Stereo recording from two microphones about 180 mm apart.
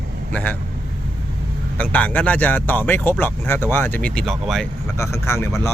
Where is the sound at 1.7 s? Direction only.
5° left (ahead or behind).